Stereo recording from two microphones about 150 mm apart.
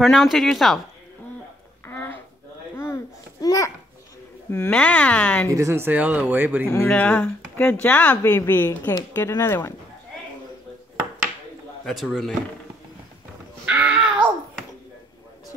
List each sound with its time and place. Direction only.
0.0 s speech: centre (ahead or behind)
1.9 s a sound: 15° left (ahead or behind)
2.8 s babbling: 20° left (ahead or behind)
4.5 s speech: 10° left (ahead or behind)
5.5 s speech: 20° right (ahead or behind)
6.9 s speech: 10° left (ahead or behind)
11.8 s speech: centre (ahead or behind)
13.7 s caw: 10° right (ahead or behind)